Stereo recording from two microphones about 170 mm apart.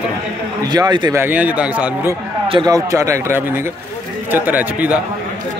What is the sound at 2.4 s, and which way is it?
A man's voice, 25° right (ahead or behind).